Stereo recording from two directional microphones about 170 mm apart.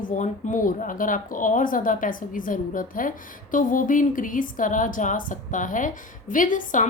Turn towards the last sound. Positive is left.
turn(degrees=50)  # may be behind; listen again after turning